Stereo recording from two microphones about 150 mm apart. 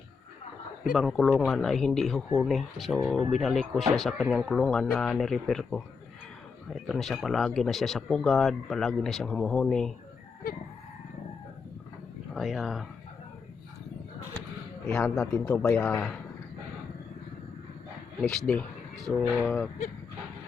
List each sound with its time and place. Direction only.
0.9 s speech: centre (ahead or behind)
12.3 s speech: centre (ahead or behind)
14.8 s a man's voice: 5° left (ahead or behind)
18.2 s speech: 5° left (ahead or behind)